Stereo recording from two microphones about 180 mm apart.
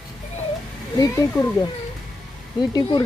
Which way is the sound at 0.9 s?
20° left (ahead or behind).